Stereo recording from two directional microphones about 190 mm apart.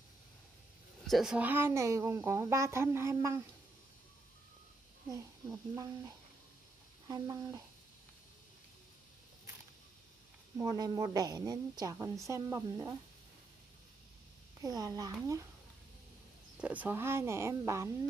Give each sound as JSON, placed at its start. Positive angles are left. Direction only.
{"t": 1.0, "sound": "a woman's voice", "side_deg": 0}
{"t": 5.1, "sound": "a woman's voice", "side_deg": -20}
{"t": 10.6, "sound": "a woman's voice", "side_deg": -20}
{"t": 14.6, "sound": "a woman's voice", "side_deg": -20}
{"t": 16.5, "sound": "a woman's voice", "side_deg": -5}